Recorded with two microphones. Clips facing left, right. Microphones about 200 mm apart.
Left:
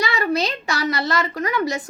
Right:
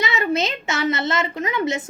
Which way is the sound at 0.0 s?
20° right (ahead or behind).